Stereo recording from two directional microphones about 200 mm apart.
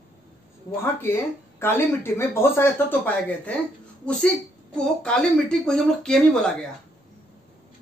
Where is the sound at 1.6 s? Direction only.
10° left (ahead or behind).